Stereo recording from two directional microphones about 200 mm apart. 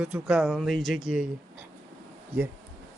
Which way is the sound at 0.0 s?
5° right (ahead or behind).